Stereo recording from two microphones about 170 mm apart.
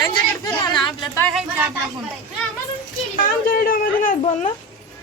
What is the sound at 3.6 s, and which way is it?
Speech, 55° left (ahead or behind).